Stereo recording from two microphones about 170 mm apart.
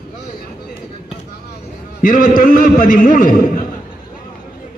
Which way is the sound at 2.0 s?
55° left (ahead or behind).